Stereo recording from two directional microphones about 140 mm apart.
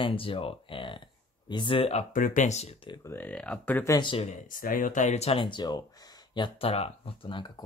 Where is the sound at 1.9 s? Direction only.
65° left (ahead or behind).